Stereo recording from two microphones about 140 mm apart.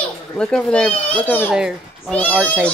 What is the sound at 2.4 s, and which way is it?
Speech, 10° left (ahead or behind).